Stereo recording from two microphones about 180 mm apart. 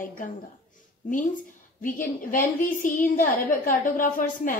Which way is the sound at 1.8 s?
50° left (ahead or behind).